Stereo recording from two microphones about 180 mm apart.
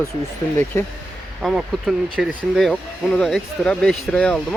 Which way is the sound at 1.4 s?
Centre (ahead or behind).